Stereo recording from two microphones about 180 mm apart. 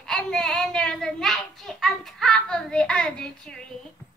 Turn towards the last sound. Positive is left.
turn(degrees=5)  # may be behind; listen again after turning